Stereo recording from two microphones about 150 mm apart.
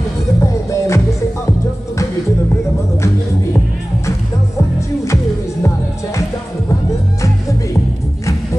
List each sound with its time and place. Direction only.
0.4 s music: 20° left (ahead or behind)
4.6 s music: 20° left (ahead or behind)